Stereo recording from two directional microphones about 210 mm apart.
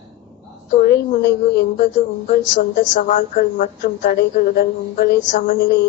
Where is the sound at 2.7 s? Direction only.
35° left (ahead or behind).